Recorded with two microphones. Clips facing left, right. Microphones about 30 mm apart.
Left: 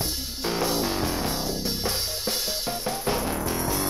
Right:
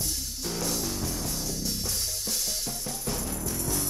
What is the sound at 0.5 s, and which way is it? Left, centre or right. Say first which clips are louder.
Music: left 7 dB; left.